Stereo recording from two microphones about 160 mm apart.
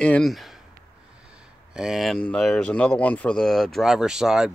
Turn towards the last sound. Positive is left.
turn(degrees=-5)  # may be behind; listen again after turning